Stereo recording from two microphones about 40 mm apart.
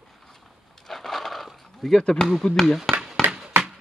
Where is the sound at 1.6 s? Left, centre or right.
Centre.